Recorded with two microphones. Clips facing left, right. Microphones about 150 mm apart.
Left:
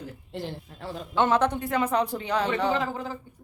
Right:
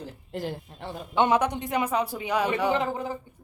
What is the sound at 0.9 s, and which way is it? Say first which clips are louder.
Speech: even; 15° right (ahead or behind).